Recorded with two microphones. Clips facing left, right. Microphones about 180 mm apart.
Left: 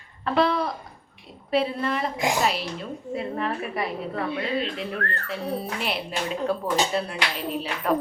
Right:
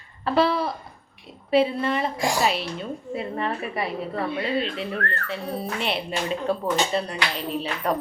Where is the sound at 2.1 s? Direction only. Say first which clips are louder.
Even; 20° left (ahead or behind).